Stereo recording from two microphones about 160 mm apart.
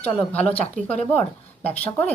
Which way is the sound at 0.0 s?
10° left (ahead or behind).